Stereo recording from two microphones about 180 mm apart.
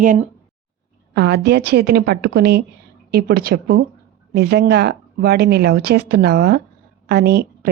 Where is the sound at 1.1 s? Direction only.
65° right (ahead or behind).